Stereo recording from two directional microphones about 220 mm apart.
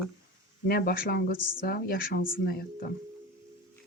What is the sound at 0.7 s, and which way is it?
Speech, 40° left (ahead or behind).